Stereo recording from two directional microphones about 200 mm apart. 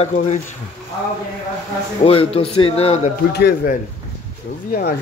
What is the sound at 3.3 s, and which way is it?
A man's voice, 55° left (ahead or behind).